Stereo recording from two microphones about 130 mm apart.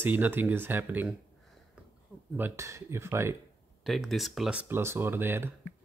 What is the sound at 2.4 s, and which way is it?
Speech, 20° right (ahead or behind).